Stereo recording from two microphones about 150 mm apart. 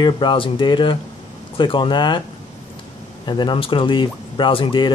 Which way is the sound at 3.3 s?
30° left (ahead or behind).